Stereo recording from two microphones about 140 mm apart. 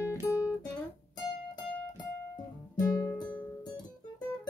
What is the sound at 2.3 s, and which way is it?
Music, 25° left (ahead or behind).